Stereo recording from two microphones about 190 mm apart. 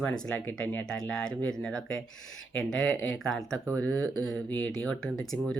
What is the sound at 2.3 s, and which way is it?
Speech, 90° left.